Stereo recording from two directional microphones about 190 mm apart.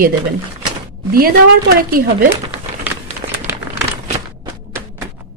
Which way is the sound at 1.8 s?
50° right (ahead or behind).